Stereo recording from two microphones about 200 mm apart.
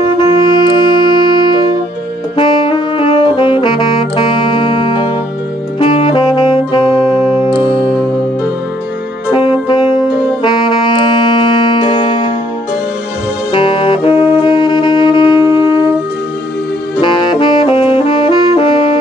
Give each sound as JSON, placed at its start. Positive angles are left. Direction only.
{"t": 0.2, "sound": "music", "side_deg": 25}
{"t": 2.3, "sound": "saxophone", "side_deg": 25}
{"t": 9.3, "sound": "saxophone", "side_deg": 25}
{"t": 13.5, "sound": "music", "side_deg": 25}
{"t": 14.4, "sound": "wind instrument", "side_deg": 25}
{"t": 15.3, "sound": "wind instrument", "side_deg": -15}
{"t": 17.0, "sound": "saxophone", "side_deg": 25}